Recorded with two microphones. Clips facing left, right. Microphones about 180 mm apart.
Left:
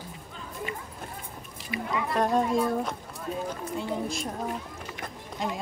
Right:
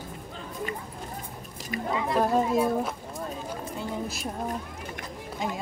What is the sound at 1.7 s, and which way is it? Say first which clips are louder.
Speech: right 1 dB; 45° right (ahead or behind).